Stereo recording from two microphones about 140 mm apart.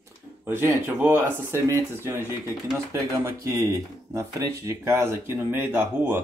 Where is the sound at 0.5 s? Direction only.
15° right (ahead or behind).